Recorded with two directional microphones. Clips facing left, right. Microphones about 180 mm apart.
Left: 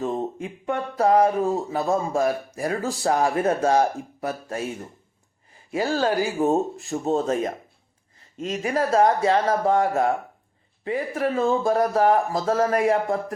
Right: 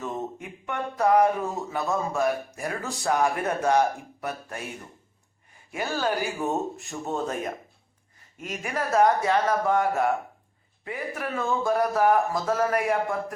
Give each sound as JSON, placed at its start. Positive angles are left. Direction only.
{"t": 0.0, "sound": "speech", "side_deg": 30}
{"t": 5.7, "sound": "speech", "side_deg": 30}